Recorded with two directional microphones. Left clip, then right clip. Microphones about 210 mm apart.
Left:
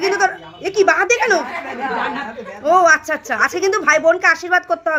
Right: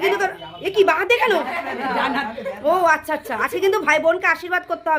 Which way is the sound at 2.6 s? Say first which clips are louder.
Left 5 dB; 5° left (ahead or behind).